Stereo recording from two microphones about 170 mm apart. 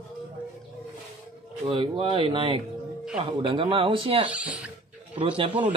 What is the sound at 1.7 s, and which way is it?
A man's voice, 30° right (ahead or behind).